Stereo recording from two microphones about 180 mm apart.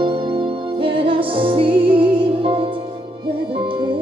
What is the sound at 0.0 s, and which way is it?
Music, 30° right (ahead or behind).